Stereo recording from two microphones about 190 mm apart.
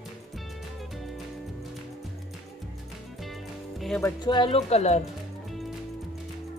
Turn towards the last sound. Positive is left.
turn(degrees=35)  # may be behind; listen again after turning